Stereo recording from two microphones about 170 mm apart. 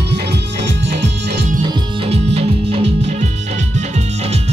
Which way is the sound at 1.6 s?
35° right (ahead or behind).